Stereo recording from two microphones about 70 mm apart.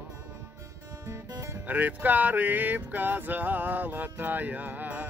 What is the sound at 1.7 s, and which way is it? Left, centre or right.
Male singing, right.